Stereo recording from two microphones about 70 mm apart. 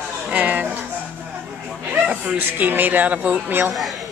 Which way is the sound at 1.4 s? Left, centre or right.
Centre.